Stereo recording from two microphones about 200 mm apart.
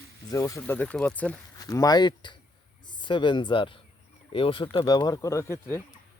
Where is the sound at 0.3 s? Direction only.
15° left (ahead or behind).